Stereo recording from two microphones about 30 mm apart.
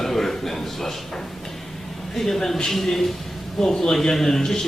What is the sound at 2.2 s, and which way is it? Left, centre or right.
Speech, centre.